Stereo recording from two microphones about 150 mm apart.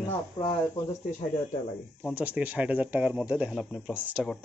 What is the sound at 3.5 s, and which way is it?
Speech, 5° left (ahead or behind).